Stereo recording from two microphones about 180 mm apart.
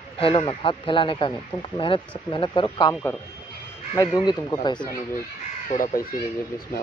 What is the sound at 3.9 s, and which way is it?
Speech, 20° left (ahead or behind).